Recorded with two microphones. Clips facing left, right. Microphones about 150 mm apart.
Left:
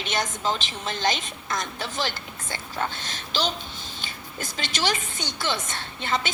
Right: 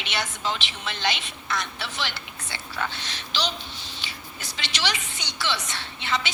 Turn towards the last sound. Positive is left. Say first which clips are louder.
# left 1 dB
turn(degrees=45)  # may be behind; listen again after turning